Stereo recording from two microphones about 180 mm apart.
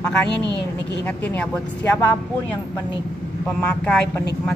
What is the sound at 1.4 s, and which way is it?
Speech, 5° left (ahead or behind).